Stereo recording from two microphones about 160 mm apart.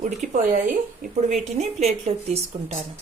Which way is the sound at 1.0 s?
50° right (ahead or behind).